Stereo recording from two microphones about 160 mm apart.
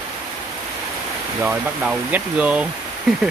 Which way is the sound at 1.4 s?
5° right (ahead or behind).